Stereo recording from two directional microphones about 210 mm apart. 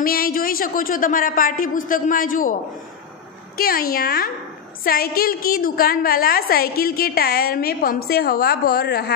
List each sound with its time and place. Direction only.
0.0 s a man's voice: 45° left (ahead or behind)
3.5 s a woman's voice: 45° left (ahead or behind)